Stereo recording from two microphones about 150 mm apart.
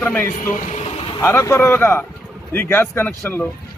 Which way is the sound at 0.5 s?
50° left (ahead or behind).